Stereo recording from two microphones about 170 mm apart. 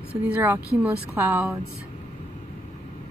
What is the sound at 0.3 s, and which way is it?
A woman's voice, 10° right (ahead or behind).